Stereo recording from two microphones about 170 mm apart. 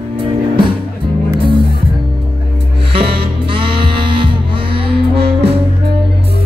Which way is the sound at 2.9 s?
35° right (ahead or behind).